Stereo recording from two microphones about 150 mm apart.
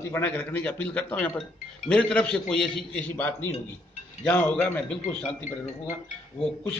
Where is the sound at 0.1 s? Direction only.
10° left (ahead or behind).